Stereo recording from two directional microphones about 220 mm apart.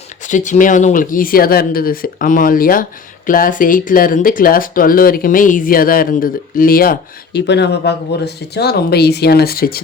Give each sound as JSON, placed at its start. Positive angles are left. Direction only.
{"t": 0.3, "sound": "speech", "side_deg": 35}